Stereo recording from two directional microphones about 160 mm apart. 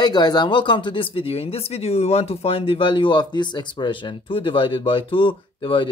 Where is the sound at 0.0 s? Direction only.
25° left (ahead or behind).